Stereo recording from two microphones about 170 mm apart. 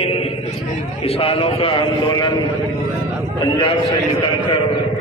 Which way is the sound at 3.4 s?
30° left (ahead or behind).